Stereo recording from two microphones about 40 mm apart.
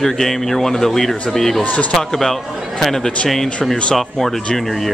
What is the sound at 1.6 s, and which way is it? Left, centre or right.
Speech, left.